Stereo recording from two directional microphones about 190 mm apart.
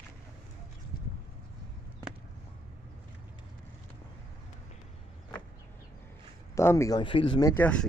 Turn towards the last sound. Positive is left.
turn(degrees=10)  # may be behind; listen again after turning